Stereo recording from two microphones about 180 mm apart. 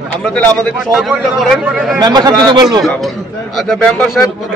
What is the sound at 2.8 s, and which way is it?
Speech, centre (ahead or behind).